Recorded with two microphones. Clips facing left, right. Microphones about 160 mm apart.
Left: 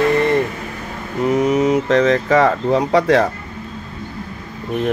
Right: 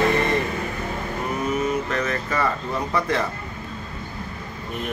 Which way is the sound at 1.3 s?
90° left.